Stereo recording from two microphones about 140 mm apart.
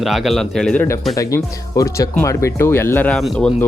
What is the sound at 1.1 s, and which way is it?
Speech, 25° left (ahead or behind).